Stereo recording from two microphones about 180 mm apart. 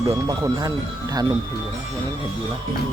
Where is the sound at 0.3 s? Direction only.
20° right (ahead or behind).